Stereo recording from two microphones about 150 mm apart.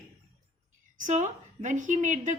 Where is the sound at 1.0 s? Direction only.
50° right (ahead or behind).